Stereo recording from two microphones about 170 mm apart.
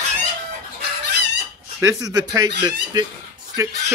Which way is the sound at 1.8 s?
20° right (ahead or behind).